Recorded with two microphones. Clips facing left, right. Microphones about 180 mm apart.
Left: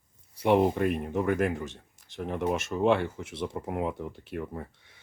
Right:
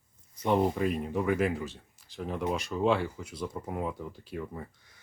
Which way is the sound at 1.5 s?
20° left (ahead or behind).